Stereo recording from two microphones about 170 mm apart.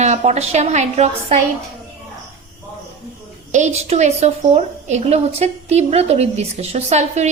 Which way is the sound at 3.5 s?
45° right (ahead or behind).